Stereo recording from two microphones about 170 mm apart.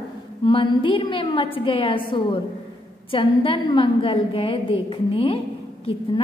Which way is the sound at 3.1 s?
30° left (ahead or behind).